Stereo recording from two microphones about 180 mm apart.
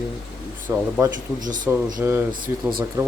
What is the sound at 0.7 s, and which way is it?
Speech, 10° right (ahead or behind).